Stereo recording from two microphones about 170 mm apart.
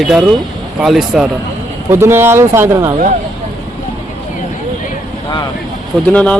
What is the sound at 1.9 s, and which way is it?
Speech, 15° right (ahead or behind).